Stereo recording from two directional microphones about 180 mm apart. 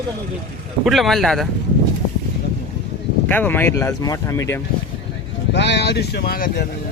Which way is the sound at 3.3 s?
10° left (ahead or behind).